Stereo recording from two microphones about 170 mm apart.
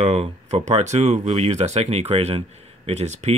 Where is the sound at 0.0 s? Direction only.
40° right (ahead or behind).